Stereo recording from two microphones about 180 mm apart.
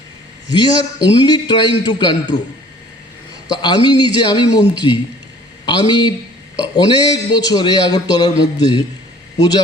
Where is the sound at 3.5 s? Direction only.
25° left (ahead or behind).